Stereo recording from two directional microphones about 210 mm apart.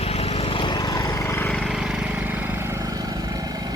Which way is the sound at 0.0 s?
30° left (ahead or behind).